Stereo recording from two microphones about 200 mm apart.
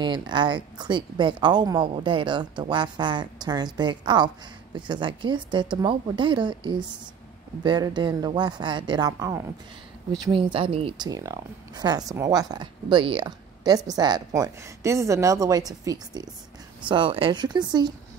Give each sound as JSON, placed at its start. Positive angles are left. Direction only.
{"t": 0.0, "sound": "speech", "side_deg": -20}